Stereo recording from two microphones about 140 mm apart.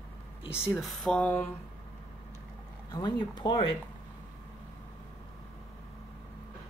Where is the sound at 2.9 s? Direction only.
30° left (ahead or behind).